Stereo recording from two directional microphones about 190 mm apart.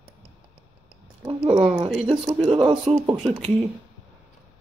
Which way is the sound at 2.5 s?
25° right (ahead or behind).